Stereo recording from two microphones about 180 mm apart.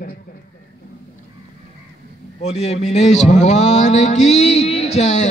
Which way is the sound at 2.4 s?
35° left (ahead or behind).